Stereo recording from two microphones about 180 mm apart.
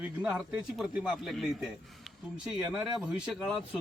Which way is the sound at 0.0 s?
10° right (ahead or behind).